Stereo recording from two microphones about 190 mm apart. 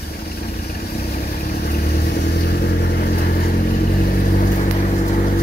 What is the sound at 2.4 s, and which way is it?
Vehicle, 55° left (ahead or behind).